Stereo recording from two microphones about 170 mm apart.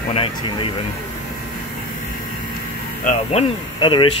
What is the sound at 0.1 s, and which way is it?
Speech, 30° left (ahead or behind).